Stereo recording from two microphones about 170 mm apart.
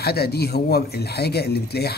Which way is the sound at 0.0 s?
70° left (ahead or behind).